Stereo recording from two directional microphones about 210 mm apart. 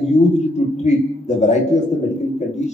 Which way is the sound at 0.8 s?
35° left (ahead or behind).